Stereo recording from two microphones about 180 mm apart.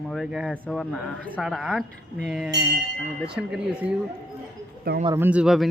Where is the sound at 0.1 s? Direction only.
Centre (ahead or behind).